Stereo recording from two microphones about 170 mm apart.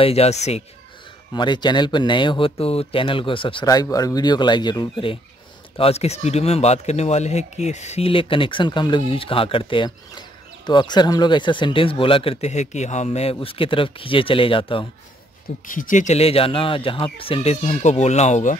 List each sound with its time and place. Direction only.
0.0 s speech: 35° left (ahead or behind)
1.3 s speech: 25° left (ahead or behind)
15.6 s speech: 50° left (ahead or behind)